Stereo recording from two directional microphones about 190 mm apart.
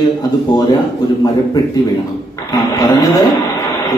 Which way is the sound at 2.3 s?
20° left (ahead or behind).